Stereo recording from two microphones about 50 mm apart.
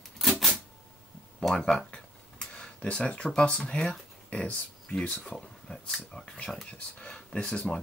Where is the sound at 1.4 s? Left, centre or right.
Centre.